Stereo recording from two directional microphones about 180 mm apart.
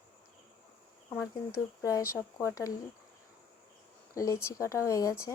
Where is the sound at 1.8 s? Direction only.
15° left (ahead or behind).